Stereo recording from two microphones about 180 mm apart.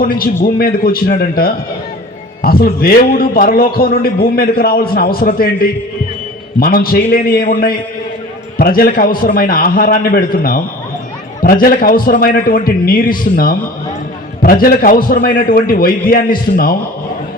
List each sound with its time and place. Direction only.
0.4 s a man's voice: 55° left (ahead or behind)